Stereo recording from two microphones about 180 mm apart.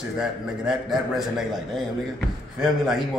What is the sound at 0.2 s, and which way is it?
A man's voice, centre (ahead or behind).